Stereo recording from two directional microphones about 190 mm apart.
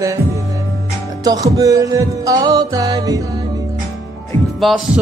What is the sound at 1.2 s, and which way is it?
Music, 20° right (ahead or behind).